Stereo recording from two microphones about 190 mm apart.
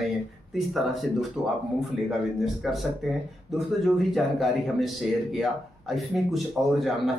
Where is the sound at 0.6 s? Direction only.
Centre (ahead or behind).